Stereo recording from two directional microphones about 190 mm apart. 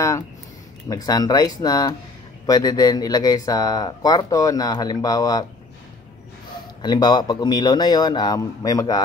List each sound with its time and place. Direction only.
0.8 s speech: 20° left (ahead or behind)
6.8 s speech: 20° left (ahead or behind)